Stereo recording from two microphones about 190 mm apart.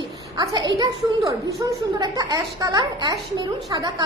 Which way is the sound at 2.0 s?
20° right (ahead or behind).